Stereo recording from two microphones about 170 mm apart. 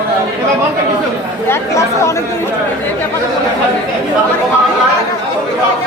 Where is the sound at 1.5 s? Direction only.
15° left (ahead or behind).